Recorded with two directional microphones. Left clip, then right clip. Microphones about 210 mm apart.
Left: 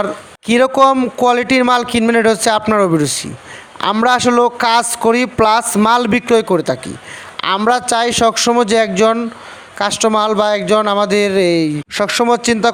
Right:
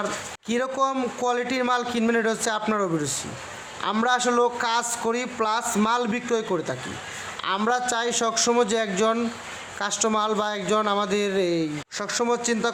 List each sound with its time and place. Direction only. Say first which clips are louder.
0.4 s speech: left 14 dB; 40° left (ahead or behind)